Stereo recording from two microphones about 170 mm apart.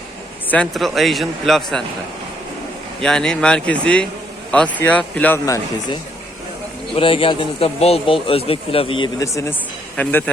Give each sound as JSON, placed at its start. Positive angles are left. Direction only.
{"t": 0.4, "sound": "speech", "side_deg": 5}
{"t": 3.0, "sound": "speech", "side_deg": 5}
{"t": 6.9, "sound": "speech", "side_deg": 30}
{"t": 9.1, "sound": "speech", "side_deg": 20}